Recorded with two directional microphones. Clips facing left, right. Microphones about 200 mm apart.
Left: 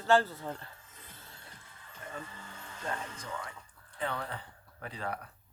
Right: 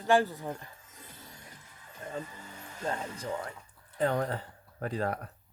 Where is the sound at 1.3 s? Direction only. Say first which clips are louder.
Right 3 dB; 15° right (ahead or behind).